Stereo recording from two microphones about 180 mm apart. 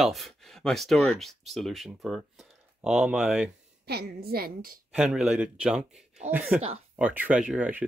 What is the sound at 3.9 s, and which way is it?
Speech, 60° right (ahead or behind).